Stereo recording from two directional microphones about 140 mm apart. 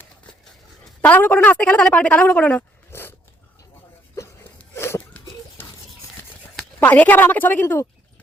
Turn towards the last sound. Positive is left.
turn(degrees=15)  # may be behind; listen again after turning